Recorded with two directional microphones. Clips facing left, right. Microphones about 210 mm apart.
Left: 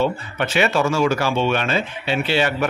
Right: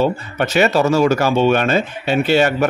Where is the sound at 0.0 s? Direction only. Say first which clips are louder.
Right 3 dB; 40° right (ahead or behind).